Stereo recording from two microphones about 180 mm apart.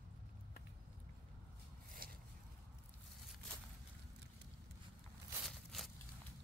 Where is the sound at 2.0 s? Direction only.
55° right (ahead or behind).